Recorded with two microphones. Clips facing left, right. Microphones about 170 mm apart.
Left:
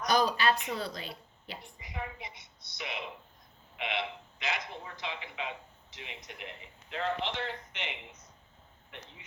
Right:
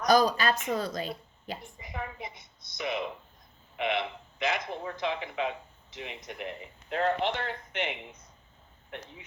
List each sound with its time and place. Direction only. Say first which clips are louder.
0.0 s speech: right 4 dB; 40° right (ahead or behind)